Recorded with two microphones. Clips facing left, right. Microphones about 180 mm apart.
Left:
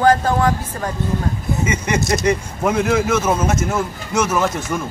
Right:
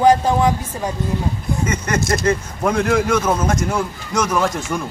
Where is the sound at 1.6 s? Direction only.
10° left (ahead or behind).